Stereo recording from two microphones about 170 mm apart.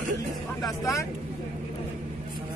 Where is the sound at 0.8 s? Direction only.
20° left (ahead or behind).